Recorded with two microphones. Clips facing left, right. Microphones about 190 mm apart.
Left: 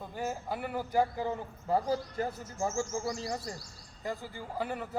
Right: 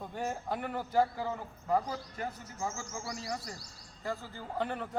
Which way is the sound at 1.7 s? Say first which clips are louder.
Left 3 dB; 30° left (ahead or behind).